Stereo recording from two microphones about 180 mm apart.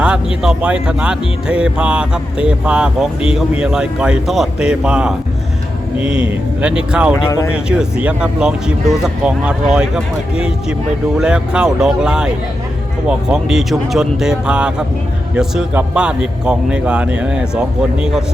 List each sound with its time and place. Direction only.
0.0 s speech: 5° right (ahead or behind)
7.3 s speech: 15° left (ahead or behind)
7.5 s speech: 5° right (ahead or behind)